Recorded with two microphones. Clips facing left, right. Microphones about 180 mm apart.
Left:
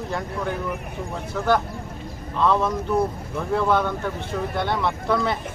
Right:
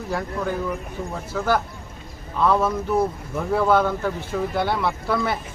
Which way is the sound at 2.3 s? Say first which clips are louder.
Right 1 dB; 5° right (ahead or behind).